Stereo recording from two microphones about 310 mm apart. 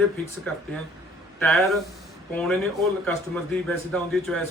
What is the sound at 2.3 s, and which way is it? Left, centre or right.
Speech, centre.